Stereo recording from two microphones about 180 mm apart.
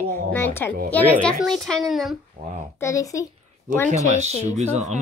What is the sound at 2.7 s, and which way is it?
Speech, 15° left (ahead or behind).